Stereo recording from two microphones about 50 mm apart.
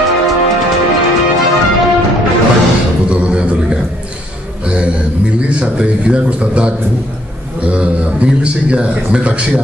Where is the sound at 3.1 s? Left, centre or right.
Right.